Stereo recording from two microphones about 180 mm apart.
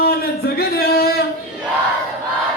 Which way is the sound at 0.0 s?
60° left (ahead or behind).